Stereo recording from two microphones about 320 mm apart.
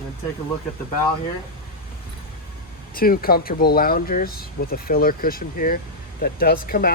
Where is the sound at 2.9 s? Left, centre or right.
Left.